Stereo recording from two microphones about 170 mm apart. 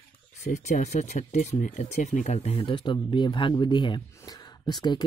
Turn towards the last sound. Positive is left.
turn(degrees=25)  # may be behind; listen again after turning